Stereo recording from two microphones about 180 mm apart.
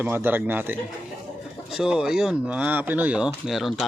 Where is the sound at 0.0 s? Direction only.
10° right (ahead or behind).